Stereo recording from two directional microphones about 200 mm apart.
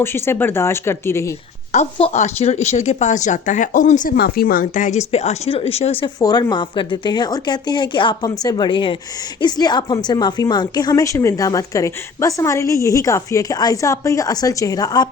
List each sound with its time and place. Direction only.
0.0 s a woman's voice: 10° left (ahead or behind)
1.7 s a woman's voice: 35° left (ahead or behind)